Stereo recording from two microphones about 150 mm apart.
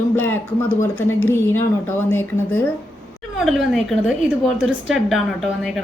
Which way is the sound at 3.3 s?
Centre (ahead or behind).